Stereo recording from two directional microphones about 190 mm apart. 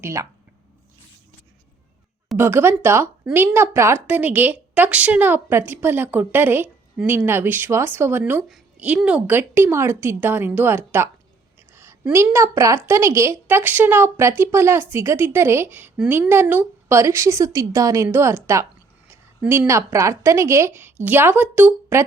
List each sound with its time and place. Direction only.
0.0 s speech: 15° right (ahead or behind)
2.4 s a woman's voice: 10° right (ahead or behind)